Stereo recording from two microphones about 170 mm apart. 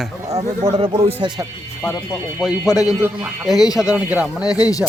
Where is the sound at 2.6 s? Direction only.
20° left (ahead or behind).